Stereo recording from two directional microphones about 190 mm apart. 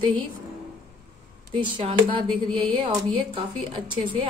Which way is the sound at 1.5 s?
25° right (ahead or behind).